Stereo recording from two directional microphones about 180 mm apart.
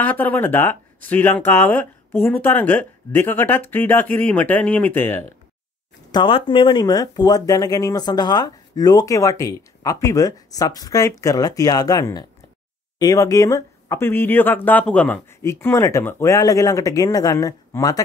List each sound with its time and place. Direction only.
0.0 s speech: 10° left (ahead or behind)
6.1 s speech: 25° left (ahead or behind)